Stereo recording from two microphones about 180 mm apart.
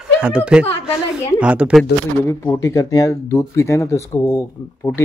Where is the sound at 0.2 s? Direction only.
5° right (ahead or behind).